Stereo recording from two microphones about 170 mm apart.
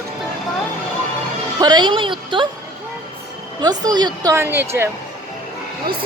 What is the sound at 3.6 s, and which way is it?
Speech, 25° right (ahead or behind).